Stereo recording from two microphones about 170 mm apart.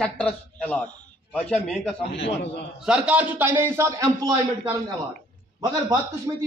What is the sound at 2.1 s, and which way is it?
Speech, 85° left.